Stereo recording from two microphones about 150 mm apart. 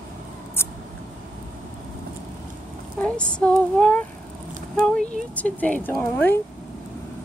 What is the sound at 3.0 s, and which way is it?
Female singing, 5° left (ahead or behind).